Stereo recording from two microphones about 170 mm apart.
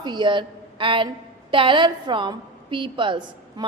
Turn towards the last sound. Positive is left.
turn(degrees=-30)  # may be behind; listen again after turning